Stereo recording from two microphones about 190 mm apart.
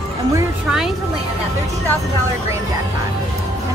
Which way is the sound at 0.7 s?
5° right (ahead or behind).